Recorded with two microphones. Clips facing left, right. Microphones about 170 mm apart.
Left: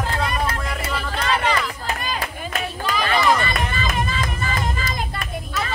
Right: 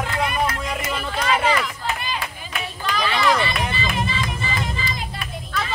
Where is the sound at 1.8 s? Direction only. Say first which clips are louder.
Left 1 dB; 45° left (ahead or behind).